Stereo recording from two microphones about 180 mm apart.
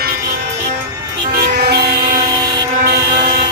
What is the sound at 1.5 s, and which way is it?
Vehicle, 65° right (ahead or behind).